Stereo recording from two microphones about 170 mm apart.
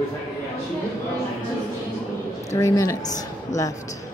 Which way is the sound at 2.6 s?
20° left (ahead or behind).